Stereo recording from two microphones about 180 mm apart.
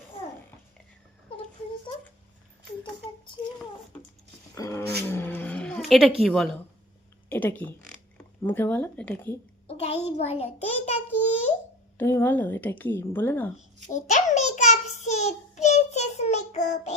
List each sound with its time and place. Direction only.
4.5 s roaring cats: 15° left (ahead or behind)
5.1 s music: 10° left (ahead or behind)
6.2 s a woman's voice: centre (ahead or behind)
9.6 s a sound: 35° left (ahead or behind)
11.9 s a woman's voice: 15° left (ahead or behind)
13.9 s child singing: 40° left (ahead or behind)